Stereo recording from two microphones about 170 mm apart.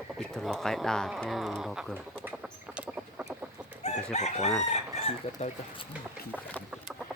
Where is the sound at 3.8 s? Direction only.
40° left (ahead or behind).